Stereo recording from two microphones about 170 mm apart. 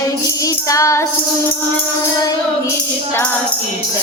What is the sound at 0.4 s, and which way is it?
Music, 20° left (ahead or behind).